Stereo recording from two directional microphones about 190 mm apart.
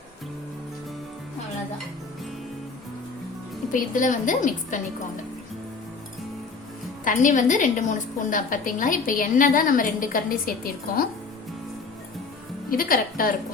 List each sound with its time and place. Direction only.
3.7 s a woman's voice: 45° left (ahead or behind)
7.0 s a woman's voice: 45° left (ahead or behind)
12.7 s a woman's voice: 50° left (ahead or behind)